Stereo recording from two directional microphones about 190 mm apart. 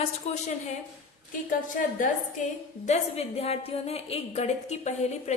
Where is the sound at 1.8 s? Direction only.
45° left (ahead or behind).